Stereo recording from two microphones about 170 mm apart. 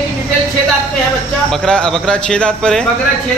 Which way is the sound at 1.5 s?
5° left (ahead or behind).